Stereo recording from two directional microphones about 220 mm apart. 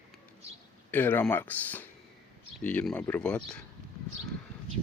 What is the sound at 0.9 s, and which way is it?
Speech, 10° left (ahead or behind).